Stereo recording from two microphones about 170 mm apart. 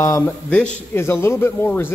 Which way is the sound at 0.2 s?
10° left (ahead or behind).